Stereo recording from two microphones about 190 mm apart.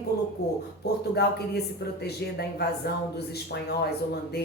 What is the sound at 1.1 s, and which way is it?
A woman's voice, 60° left (ahead or behind).